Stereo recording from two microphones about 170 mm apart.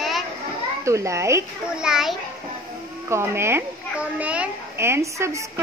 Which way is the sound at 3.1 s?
15° right (ahead or behind).